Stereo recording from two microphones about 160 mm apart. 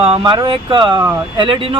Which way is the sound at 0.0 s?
35° right (ahead or behind).